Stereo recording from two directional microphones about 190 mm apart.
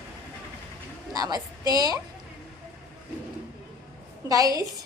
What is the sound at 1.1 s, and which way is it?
Speech, 20° right (ahead or behind).